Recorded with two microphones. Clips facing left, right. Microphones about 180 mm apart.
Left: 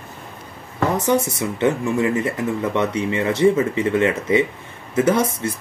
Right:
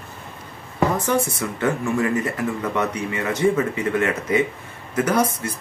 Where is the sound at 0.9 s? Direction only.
20° left (ahead or behind).